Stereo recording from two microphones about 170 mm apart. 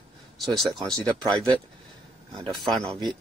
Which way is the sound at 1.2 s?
25° right (ahead or behind).